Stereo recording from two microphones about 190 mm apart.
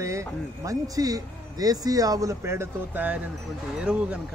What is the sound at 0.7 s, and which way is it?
A man's voice, 20° right (ahead or behind).